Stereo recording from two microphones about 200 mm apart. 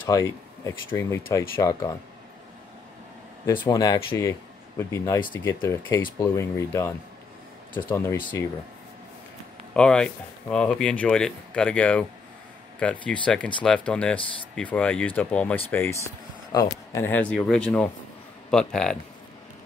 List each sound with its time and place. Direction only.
0.0 s speech: 15° left (ahead or behind)
3.6 s speech: 20° left (ahead or behind)
9.8 s speech: 5° left (ahead or behind)